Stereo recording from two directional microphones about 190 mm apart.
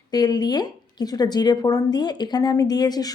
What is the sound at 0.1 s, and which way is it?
A woman's voice, 20° left (ahead or behind).